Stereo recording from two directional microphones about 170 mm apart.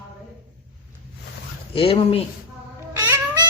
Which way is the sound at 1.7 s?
35° left (ahead or behind).